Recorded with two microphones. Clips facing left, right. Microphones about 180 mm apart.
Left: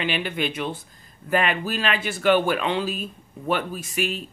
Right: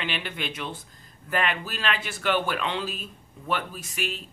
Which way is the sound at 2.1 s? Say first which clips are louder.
Left 8 dB; 45° left (ahead or behind).